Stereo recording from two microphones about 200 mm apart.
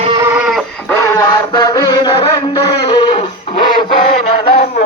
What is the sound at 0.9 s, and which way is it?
Music, 15° left (ahead or behind).